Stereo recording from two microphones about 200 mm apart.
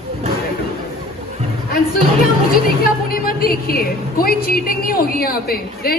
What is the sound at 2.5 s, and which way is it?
A woman's voice, 45° left (ahead or behind).